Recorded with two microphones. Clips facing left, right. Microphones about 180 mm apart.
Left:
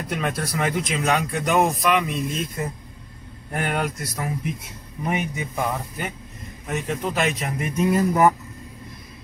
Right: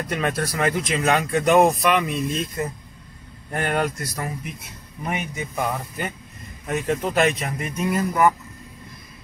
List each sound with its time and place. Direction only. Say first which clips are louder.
0.1 s speech: right 1 dB; centre (ahead or behind)
3.5 s speech: right 2 dB; 5° left (ahead or behind)
5.0 s speech: left 2 dB; 10° left (ahead or behind)
7.4 s speech: left 3 dB; 25° left (ahead or behind)